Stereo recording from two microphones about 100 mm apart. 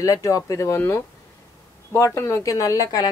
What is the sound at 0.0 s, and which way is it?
Speech, 35° left (ahead or behind).